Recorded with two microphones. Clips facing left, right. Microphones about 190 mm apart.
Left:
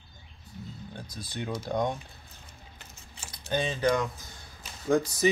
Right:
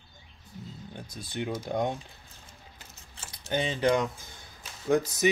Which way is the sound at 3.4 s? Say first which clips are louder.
Right 1 dB; 20° right (ahead or behind).